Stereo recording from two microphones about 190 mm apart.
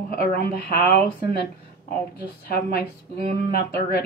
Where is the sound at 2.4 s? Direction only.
55° left (ahead or behind).